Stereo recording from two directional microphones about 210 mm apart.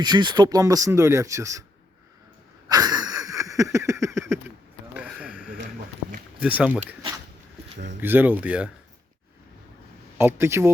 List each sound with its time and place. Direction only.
0.0 s speech: 20° right (ahead or behind)
2.6 s a sound: 20° right (ahead or behind)
6.4 s speech: 5° right (ahead or behind)
8.0 s speech: 10° right (ahead or behind)
10.2 s speech: 10° right (ahead or behind)